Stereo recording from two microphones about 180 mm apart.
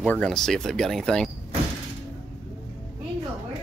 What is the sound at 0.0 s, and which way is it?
Speech, 5° left (ahead or behind).